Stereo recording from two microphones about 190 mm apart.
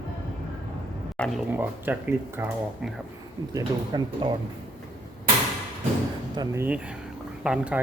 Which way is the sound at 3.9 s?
25° right (ahead or behind).